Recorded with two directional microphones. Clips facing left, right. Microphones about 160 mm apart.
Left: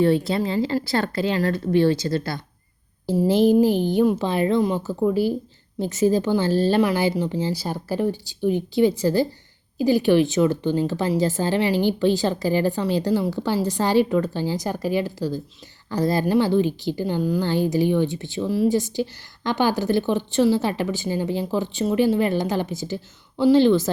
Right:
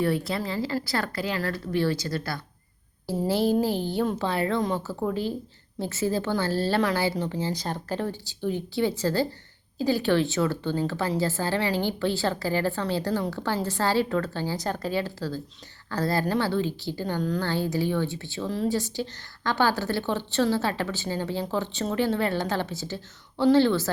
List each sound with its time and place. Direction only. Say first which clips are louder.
0.0 s a woman's voice: left 7 dB; 25° left (ahead or behind)